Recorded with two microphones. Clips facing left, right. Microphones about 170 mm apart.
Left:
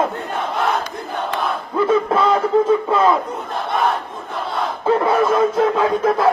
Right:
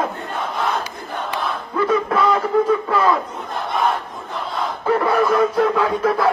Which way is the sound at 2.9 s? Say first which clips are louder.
Left 3 dB; 20° left (ahead or behind).